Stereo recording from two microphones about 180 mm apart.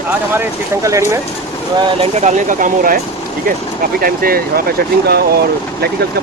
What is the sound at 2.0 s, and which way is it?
Speech, 40° right (ahead or behind).